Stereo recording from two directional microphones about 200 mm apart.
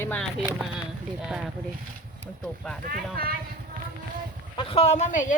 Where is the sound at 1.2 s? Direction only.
5° right (ahead or behind).